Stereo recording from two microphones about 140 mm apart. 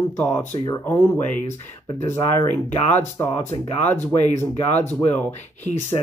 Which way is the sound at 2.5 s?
15° left (ahead or behind).